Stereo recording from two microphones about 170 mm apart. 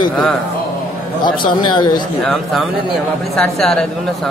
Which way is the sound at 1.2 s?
25° left (ahead or behind).